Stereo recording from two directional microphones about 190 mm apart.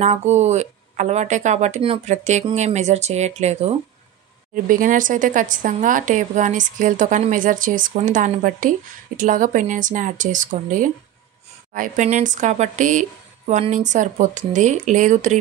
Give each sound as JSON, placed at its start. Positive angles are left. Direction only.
{"t": 0.0, "sound": "a woman's voice", "side_deg": -35}